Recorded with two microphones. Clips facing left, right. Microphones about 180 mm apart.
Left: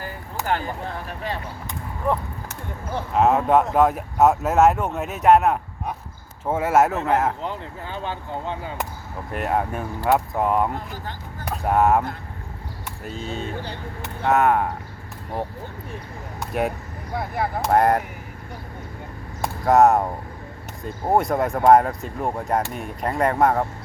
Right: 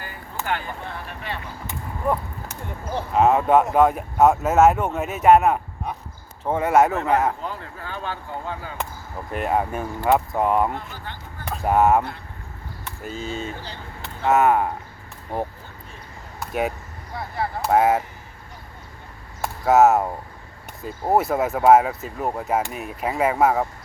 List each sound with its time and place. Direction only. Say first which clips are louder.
0.0 s speech: left 2 dB; 40° left (ahead or behind)
3.1 s speech: right 1 dB; centre (ahead or behind)
7.4 s speech: left 2 dB; 20° left (ahead or behind)
9.3 s speech: right 1 dB; centre (ahead or behind)
10.8 s speech: left 2 dB; 40° left (ahead or behind)
11.4 s speech: right 1 dB; centre (ahead or behind)
16.5 s speech: even; centre (ahead or behind)
19.4 s a sound: even; 5° right (ahead or behind)
20.8 s speech: even; 5° right (ahead or behind)